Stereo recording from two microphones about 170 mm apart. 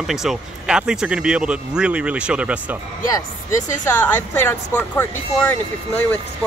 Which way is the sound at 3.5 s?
50° left (ahead or behind).